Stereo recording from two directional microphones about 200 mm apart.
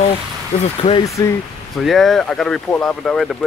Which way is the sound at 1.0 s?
15° left (ahead or behind).